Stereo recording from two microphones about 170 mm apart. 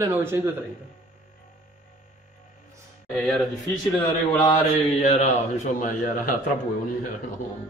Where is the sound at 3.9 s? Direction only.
25° left (ahead or behind).